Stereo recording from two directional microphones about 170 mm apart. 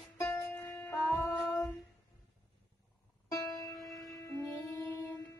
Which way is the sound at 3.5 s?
Centre (ahead or behind).